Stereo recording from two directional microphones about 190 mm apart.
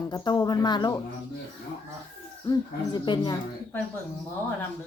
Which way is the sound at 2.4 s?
20° left (ahead or behind).